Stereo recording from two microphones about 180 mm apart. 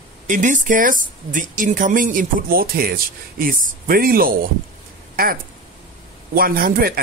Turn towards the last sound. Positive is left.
turn(degrees=-55)  # may be behind; listen again after turning